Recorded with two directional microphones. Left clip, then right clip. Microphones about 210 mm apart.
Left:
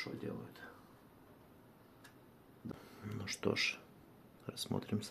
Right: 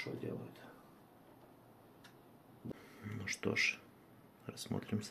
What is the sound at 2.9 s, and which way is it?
Speech, 15° left (ahead or behind).